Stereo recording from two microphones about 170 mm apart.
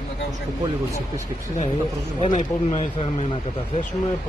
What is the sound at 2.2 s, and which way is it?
Speech, 45° left (ahead or behind).